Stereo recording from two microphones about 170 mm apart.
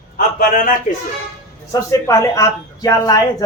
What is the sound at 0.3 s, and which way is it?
Speech, 55° left (ahead or behind).